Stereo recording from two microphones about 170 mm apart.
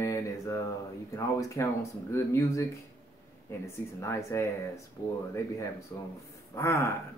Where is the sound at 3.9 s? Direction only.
15° left (ahead or behind).